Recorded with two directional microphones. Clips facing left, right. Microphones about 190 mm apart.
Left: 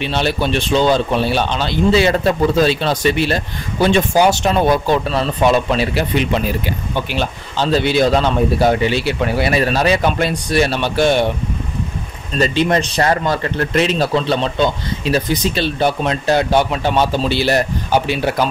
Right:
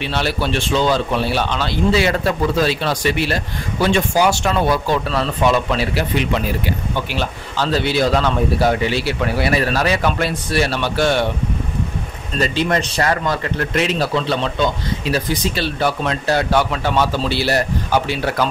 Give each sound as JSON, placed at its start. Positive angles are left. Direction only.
{"t": 0.0, "sound": "speech", "side_deg": 20}
{"t": 12.4, "sound": "speech", "side_deg": 25}